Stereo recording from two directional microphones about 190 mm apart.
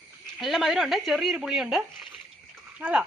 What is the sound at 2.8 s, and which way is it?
Speech, 10° right (ahead or behind).